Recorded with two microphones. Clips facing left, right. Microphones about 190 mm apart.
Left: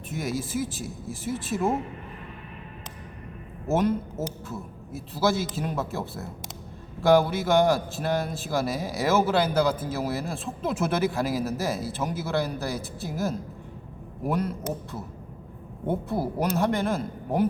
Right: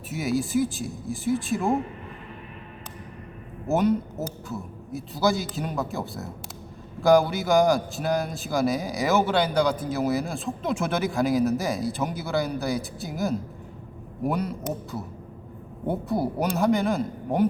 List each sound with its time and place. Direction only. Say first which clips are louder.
0.1 s a man's voice: right 5 dB; centre (ahead or behind)
3.7 s a man's voice: right 2 dB; centre (ahead or behind)